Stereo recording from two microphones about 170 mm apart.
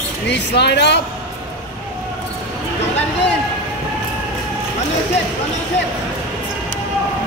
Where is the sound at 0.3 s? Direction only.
85° left.